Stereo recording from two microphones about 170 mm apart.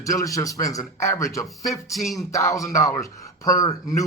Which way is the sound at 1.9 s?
Centre (ahead or behind).